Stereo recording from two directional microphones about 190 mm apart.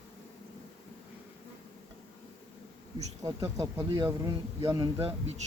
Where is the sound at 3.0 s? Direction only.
20° right (ahead or behind).